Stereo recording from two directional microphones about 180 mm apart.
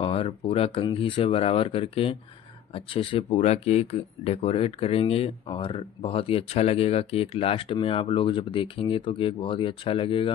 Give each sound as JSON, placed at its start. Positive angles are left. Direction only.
{"t": 0.0, "sound": "speech", "side_deg": 30}